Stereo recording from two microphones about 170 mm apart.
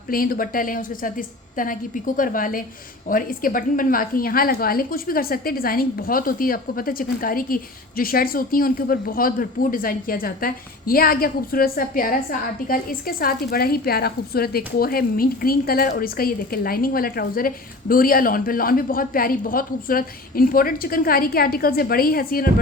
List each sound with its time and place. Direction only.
0.1 s a woman's voice: 60° left (ahead or behind)